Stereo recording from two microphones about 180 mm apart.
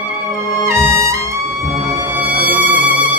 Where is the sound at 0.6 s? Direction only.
15° right (ahead or behind).